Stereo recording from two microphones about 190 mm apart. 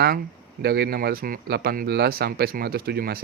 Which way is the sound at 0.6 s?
55° right (ahead or behind).